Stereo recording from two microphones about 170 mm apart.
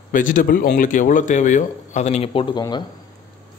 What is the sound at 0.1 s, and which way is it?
Speech, 50° left (ahead or behind).